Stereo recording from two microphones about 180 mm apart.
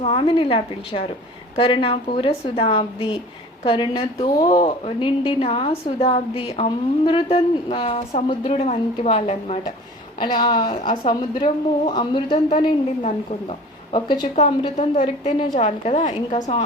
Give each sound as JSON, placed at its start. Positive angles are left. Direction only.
{"t": 0.0, "sound": "a woman's voice", "side_deg": 30}
{"t": 10.2, "sound": "a woman's voice", "side_deg": 25}
{"t": 13.9, "sound": "a woman's voice", "side_deg": 25}
{"t": 14.3, "sound": "a woman's voice", "side_deg": 35}